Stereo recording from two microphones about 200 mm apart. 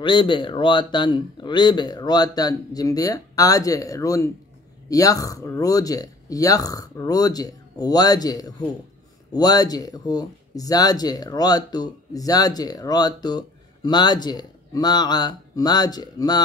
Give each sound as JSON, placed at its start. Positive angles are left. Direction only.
{"t": 0.0, "sound": "speech", "side_deg": 25}